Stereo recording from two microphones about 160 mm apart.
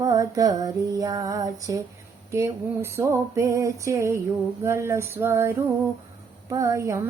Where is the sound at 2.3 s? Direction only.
15° right (ahead or behind).